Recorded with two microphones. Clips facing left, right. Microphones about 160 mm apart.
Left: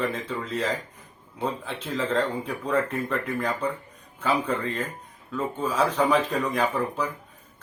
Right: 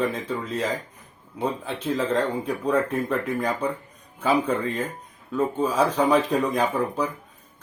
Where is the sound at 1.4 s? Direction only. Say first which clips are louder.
Right 3 dB; 10° right (ahead or behind).